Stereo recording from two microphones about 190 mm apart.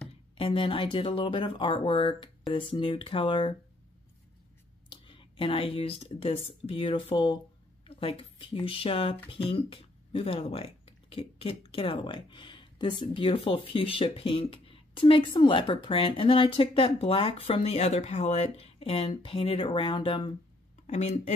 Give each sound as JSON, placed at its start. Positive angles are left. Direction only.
{"t": 0.4, "sound": "speech", "side_deg": 30}
{"t": 4.8, "sound": "speech", "side_deg": 25}